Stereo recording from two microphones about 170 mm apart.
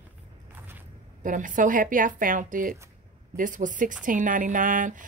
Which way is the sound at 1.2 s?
50° right (ahead or behind).